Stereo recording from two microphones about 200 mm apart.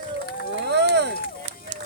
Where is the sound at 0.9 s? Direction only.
60° right (ahead or behind).